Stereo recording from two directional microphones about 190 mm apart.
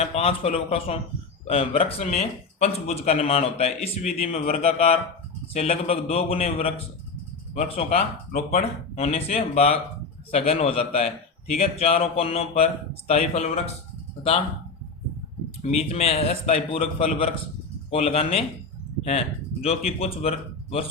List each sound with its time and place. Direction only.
0.0 s a man's voice: 30° left (ahead or behind)
15.6 s a man's voice: 35° left (ahead or behind)
19.6 s a man's voice: 30° left (ahead or behind)